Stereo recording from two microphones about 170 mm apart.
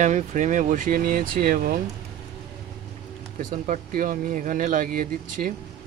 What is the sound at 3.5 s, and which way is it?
Speech, 50° right (ahead or behind).